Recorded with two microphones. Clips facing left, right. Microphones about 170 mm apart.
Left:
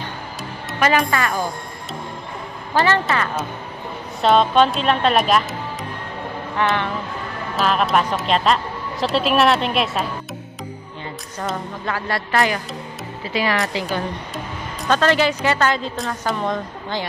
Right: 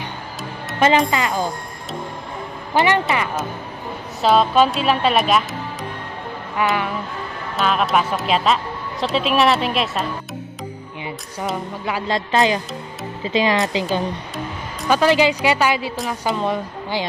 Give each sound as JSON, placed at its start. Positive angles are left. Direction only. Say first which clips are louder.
{"t": 0.7, "sound": "speech", "louder": "right 2 dB", "side_deg": -25}
{"t": 2.7, "sound": "a woman's voice", "louder": "right 1 dB", "side_deg": -15}
{"t": 4.2, "sound": "a woman's voice", "louder": "even", "side_deg": 0}
{"t": 11.3, "sound": "a woman's voice", "louder": "right 1 dB", "side_deg": -10}
{"t": 14.3, "sound": "music", "louder": "right 1 dB", "side_deg": 0}
{"t": 15.0, "sound": "a woman's voice", "louder": "right 3 dB", "side_deg": -15}